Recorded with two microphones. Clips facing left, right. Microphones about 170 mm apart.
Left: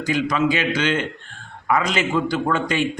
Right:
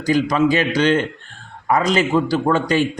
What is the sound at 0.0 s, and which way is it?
A man's voice, 35° right (ahead or behind).